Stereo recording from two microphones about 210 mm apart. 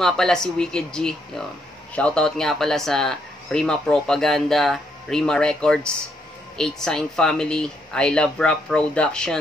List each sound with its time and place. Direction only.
0.0 s speech: 5° left (ahead or behind)